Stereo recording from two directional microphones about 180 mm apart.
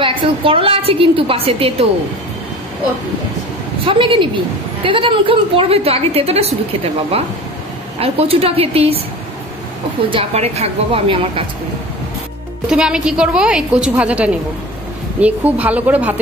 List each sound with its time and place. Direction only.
0.0 s a woman's voice: 30° right (ahead or behind)
3.8 s a woman's voice: 30° right (ahead or behind)
10.0 s a woman's voice: 30° right (ahead or behind)
12.6 s a woman's voice: 5° right (ahead or behind)